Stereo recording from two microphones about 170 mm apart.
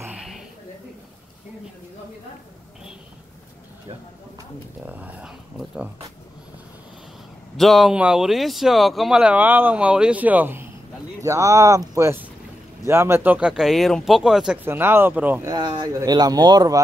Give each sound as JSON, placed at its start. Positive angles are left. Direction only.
{"t": 0.0, "sound": "a sound", "side_deg": -5}
{"t": 4.8, "sound": "speech", "side_deg": -10}
{"t": 7.5, "sound": "speech", "side_deg": 0}
{"t": 15.5, "sound": "speech", "side_deg": -25}